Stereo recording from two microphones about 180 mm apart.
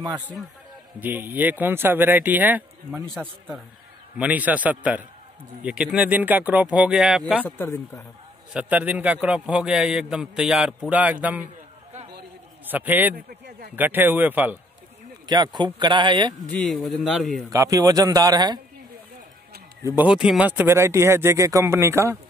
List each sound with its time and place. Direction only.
0.9 s a man's voice: 10° right (ahead or behind)
7.4 s speech: 10° left (ahead or behind)
8.5 s a man's voice: 10° right (ahead or behind)
12.6 s a man's voice: 10° right (ahead or behind)
13.1 s speech: 55° right (ahead or behind)
13.7 s a man's voice: 10° right (ahead or behind)
15.2 s speech: 25° right (ahead or behind)
16.4 s a man's voice: 5° left (ahead or behind)
17.5 s speech: 20° right (ahead or behind)
19.8 s a man's voice: 5° right (ahead or behind)